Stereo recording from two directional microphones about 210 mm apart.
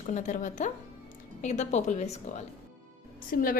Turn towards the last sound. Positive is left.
turn(degrees=45)  # may be behind; listen again after turning